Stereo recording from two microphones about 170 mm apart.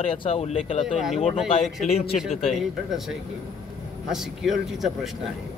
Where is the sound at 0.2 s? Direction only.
35° left (ahead or behind).